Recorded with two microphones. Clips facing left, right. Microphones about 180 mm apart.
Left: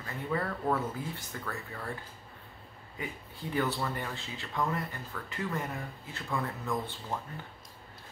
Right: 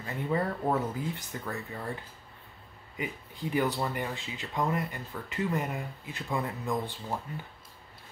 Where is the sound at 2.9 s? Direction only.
15° right (ahead or behind).